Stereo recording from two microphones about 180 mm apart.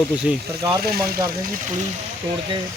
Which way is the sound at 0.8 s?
55° right (ahead or behind).